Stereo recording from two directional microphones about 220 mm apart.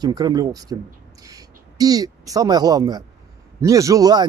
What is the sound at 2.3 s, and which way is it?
Speech, 15° right (ahead or behind).